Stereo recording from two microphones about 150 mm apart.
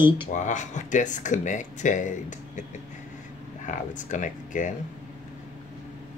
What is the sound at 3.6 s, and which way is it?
Speech, 55° left (ahead or behind).